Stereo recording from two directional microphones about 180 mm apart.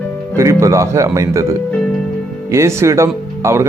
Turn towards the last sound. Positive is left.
turn(degrees=-15)  # may be behind; listen again after turning